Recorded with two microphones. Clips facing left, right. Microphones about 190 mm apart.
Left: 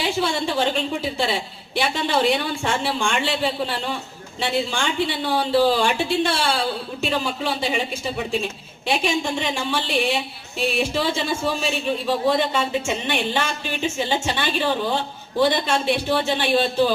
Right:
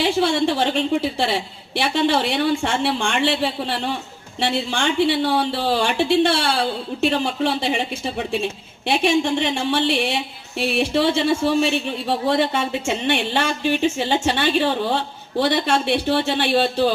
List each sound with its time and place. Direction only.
0.0 s a woman's voice: 65° right (ahead or behind)
8.9 s a woman's voice: 60° right (ahead or behind)